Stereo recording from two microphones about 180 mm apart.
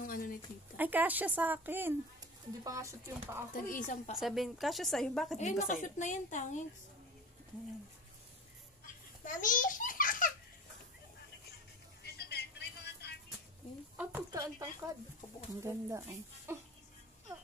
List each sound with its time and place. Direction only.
0.0 s a sound: 50° left (ahead or behind)
0.7 s speech: 10° right (ahead or behind)
3.5 s a woman's voice: 50° left (ahead or behind)
4.2 s a woman's voice: centre (ahead or behind)
5.4 s a woman's voice: 45° left (ahead or behind)
8.8 s belly laugh: 45° left (ahead or behind)
12.0 s vehicle: 65° left (ahead or behind)
13.9 s a sound: 15° right (ahead or behind)
15.6 s speech: 15° right (ahead or behind)